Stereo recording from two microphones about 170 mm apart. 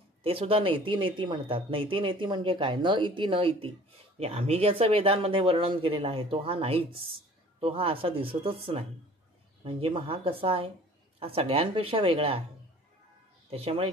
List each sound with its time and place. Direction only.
0.2 s speech: 35° right (ahead or behind)
13.5 s speech: 35° right (ahead or behind)